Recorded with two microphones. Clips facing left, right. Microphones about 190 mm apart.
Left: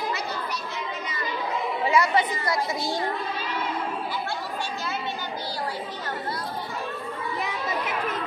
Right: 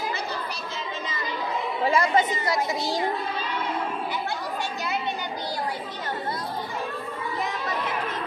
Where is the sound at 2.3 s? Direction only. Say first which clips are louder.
Right 1 dB; 20° right (ahead or behind).